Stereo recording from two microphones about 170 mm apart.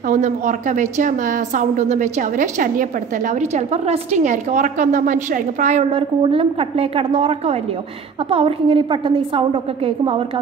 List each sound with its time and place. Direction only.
0.1 s a woman's voice: 50° right (ahead or behind)
5.9 s a woman's voice: 30° right (ahead or behind)